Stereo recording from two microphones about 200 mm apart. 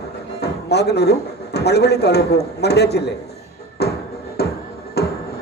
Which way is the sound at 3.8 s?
55° left (ahead or behind).